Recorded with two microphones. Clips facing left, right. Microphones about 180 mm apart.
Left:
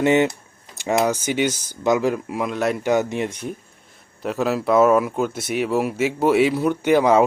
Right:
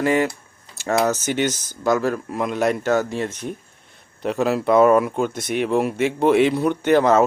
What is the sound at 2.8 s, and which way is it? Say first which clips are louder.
Speech: even; 15° left (ahead or behind).